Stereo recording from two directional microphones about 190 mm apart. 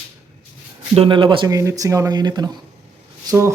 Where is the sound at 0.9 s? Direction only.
25° right (ahead or behind).